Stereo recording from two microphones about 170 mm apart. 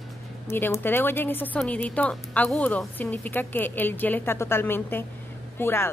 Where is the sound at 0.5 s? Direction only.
15° left (ahead or behind).